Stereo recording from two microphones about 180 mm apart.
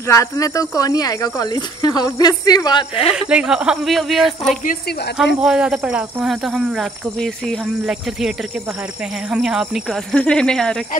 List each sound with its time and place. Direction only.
0.1 s speech: 20° left (ahead or behind)
3.1 s speech: 5° right (ahead or behind)
9.3 s speech: 5° right (ahead or behind)